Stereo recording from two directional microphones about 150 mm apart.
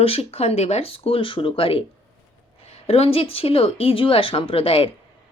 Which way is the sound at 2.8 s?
40° left (ahead or behind).